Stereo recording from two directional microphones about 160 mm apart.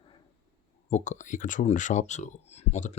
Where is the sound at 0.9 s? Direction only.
50° left (ahead or behind).